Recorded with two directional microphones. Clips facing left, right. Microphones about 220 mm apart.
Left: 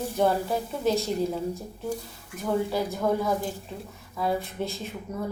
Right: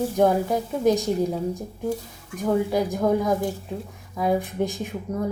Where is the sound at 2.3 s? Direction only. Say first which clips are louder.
Right 4 dB; 15° right (ahead or behind).